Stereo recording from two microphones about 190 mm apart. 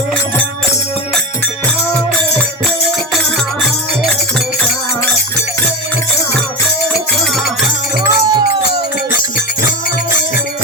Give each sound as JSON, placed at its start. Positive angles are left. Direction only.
{"t": 8.0, "sound": "music", "side_deg": -20}